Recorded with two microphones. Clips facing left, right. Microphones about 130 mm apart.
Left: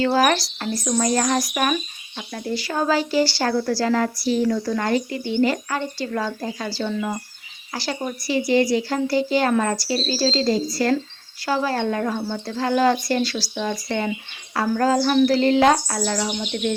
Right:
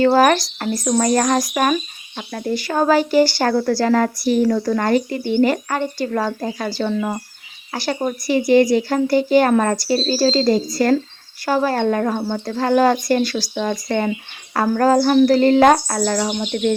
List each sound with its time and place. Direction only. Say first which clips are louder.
0.0 s speech: right 5 dB; 50° right (ahead or behind)